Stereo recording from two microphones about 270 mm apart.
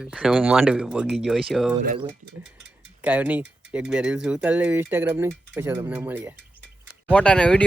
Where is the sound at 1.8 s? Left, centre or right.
Right.